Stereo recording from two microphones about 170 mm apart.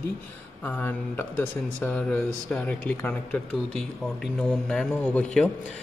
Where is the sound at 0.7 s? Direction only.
10° left (ahead or behind).